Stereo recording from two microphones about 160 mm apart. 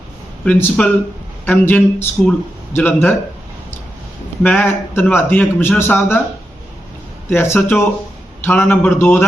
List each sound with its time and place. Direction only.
0.4 s a man's voice: 10° left (ahead or behind)
4.4 s a man's voice: 15° left (ahead or behind)
7.3 s a man's voice: 15° left (ahead or behind)